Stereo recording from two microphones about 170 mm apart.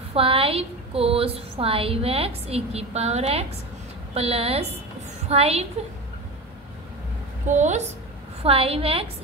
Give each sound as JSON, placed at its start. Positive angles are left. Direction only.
{"t": 0.1, "sound": "a woman's voice", "side_deg": -35}
{"t": 7.4, "sound": "a woman's voice", "side_deg": -45}